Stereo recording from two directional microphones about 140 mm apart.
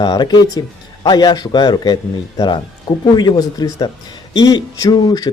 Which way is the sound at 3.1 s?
30° left (ahead or behind).